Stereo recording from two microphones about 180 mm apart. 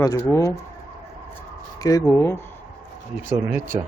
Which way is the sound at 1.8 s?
20° left (ahead or behind).